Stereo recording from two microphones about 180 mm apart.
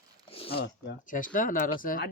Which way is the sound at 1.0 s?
45° left (ahead or behind).